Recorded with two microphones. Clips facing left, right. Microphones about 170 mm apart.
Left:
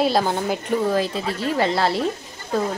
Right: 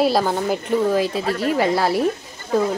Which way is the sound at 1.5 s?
10° right (ahead or behind).